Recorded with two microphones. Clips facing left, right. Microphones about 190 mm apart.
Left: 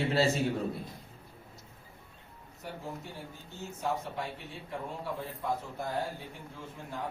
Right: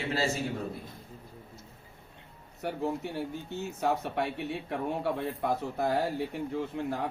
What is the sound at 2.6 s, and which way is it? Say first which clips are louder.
A man's voice: right 9 dB; 70° right (ahead or behind).